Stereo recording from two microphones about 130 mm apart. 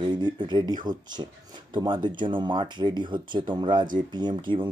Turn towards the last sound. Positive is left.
turn(degrees=-40)  # may be behind; listen again after turning